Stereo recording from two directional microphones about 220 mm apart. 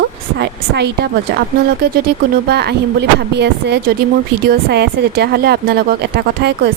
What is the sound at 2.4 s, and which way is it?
Speech, 50° right (ahead or behind).